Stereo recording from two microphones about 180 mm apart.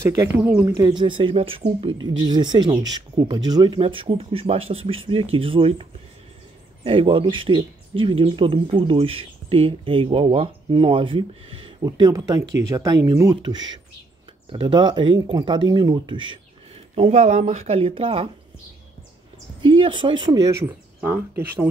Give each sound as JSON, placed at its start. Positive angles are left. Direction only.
{"t": 0.0, "sound": "speech", "side_deg": -20}
{"t": 0.4, "sound": "speech", "side_deg": -10}
{"t": 16.9, "sound": "speech", "side_deg": -35}
{"t": 19.6, "sound": "speech", "side_deg": -30}